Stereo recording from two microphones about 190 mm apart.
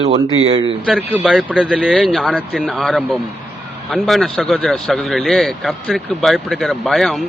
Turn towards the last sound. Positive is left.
turn(degrees=0)  # may be behind; listen again after turning